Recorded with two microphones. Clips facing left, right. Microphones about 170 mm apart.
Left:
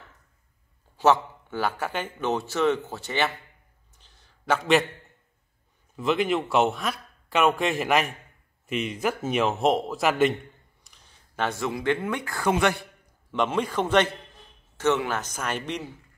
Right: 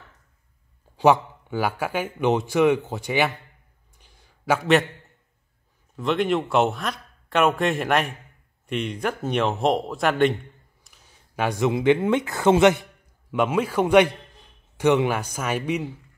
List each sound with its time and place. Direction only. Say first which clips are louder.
0.9 s a man's voice: right 3 dB; 15° right (ahead or behind)
4.0 s a sound: right 5 dB; 10° right (ahead or behind)
5.9 s speech: right 2 dB; centre (ahead or behind); by 12.8 s 20° right (ahead or behind)
13.3 s a man's voice: right 3 dB; 10° right (ahead or behind)